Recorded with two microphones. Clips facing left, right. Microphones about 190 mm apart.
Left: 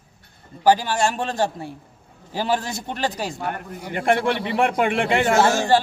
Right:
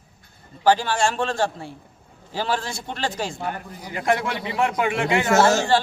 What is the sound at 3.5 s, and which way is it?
Speech, 60° left (ahead or behind).